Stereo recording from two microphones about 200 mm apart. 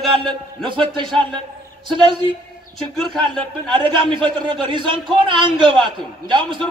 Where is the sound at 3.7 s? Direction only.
25° right (ahead or behind).